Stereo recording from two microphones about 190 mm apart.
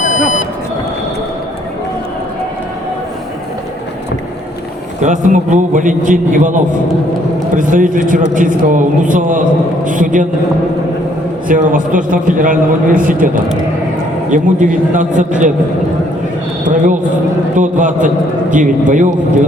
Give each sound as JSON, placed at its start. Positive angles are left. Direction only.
{"t": 0.0, "sound": "vehicle", "side_deg": 40}
{"t": 4.9, "sound": "a man's voice", "side_deg": -40}
{"t": 11.4, "sound": "a man's voice", "side_deg": -45}
{"t": 16.6, "sound": "a man's voice", "side_deg": -40}